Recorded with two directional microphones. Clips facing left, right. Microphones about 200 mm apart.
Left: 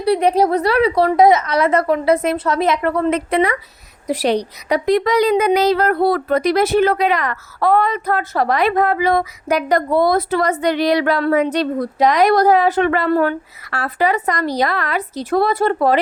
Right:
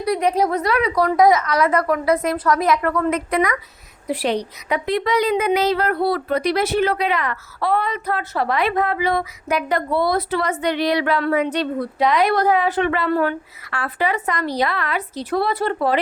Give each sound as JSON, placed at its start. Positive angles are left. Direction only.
{"t": 0.0, "sound": "a woman's voice", "side_deg": 30}
{"t": 4.0, "sound": "a woman's voice", "side_deg": 40}